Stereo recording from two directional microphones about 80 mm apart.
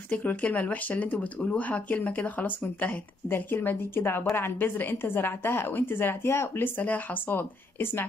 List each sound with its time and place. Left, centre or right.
0.1 s speech: centre